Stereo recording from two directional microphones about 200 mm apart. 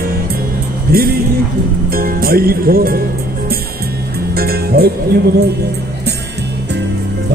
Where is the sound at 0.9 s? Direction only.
50° right (ahead or behind).